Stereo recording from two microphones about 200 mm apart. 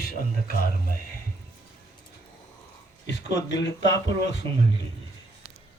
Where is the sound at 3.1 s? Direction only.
60° left (ahead or behind).